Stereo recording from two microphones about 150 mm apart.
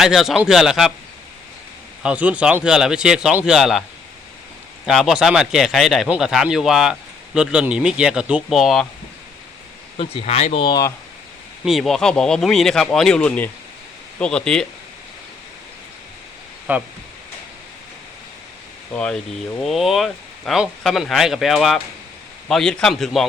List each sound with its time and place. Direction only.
0.0 s speech: 5° right (ahead or behind)
2.0 s speech: 10° right (ahead or behind)
4.9 s speech: 5° right (ahead or behind)
10.0 s speech: 40° left (ahead or behind)
10.7 s speech: 25° left (ahead or behind)
11.6 s speech: centre (ahead or behind)
16.7 s speech: 10° right (ahead or behind)
18.9 s speech: 5° left (ahead or behind)